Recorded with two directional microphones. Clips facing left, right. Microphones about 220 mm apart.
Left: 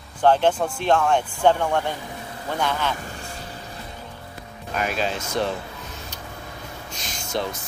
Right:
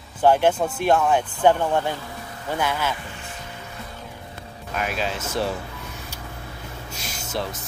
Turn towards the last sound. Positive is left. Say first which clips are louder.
# left 2 dB
turn(degrees=-5)  # may be behind; listen again after turning